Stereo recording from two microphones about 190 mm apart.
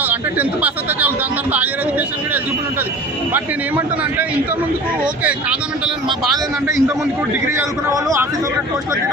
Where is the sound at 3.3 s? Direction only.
10° right (ahead or behind).